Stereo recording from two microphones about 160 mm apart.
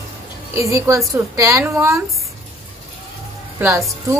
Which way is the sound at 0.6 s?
20° right (ahead or behind).